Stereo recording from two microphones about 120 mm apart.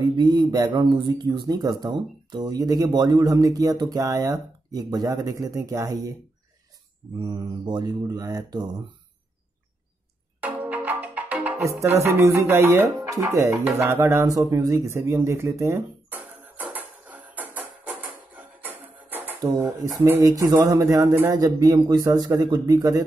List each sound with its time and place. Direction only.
0.1 s speech: 35° right (ahead or behind)
7.2 s speech: 35° right (ahead or behind)
10.4 s music: 10° right (ahead or behind)
11.5 s music: 25° right (ahead or behind)
12.0 s a man's voice: 25° right (ahead or behind)
16.2 s music: 15° right (ahead or behind)
20.0 s a man's voice: 25° right (ahead or behind)